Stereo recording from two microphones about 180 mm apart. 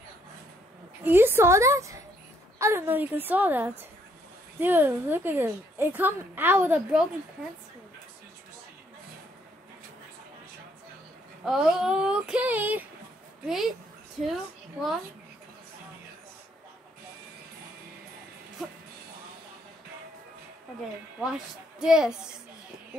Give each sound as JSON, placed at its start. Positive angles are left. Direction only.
{"t": 1.0, "sound": "a woman's voice", "side_deg": -10}
{"t": 11.4, "sound": "speech", "side_deg": -5}
{"t": 14.2, "sound": "a woman's voice", "side_deg": 0}
{"t": 21.2, "sound": "speech", "side_deg": -5}